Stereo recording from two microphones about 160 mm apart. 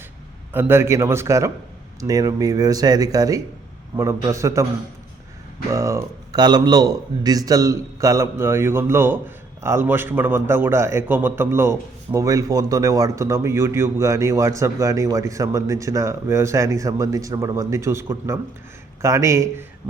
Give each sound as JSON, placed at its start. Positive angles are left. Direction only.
{"t": 0.5, "sound": "a man's voice", "side_deg": -15}
{"t": 5.7, "sound": "a man's voice", "side_deg": -20}